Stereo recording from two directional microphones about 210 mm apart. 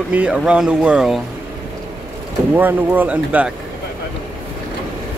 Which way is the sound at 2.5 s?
10° right (ahead or behind).